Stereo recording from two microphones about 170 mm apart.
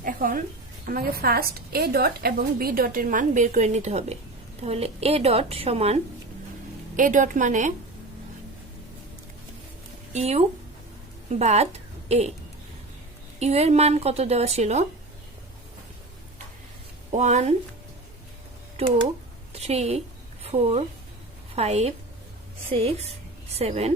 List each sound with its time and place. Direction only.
0.0 s a woman's voice: 55° right (ahead or behind); by 6.0 s 35° right (ahead or behind)
6.9 s a woman's voice: 50° right (ahead or behind)
10.1 s a woman's voice: 40° right (ahead or behind)
13.4 s a woman's voice: 40° right (ahead or behind)
17.1 s a woman's voice: 45° right (ahead or behind)
19.5 s a woman's voice: 40° right (ahead or behind)